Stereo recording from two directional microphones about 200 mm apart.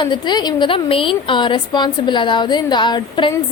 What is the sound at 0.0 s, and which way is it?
A woman's voice, 25° left (ahead or behind).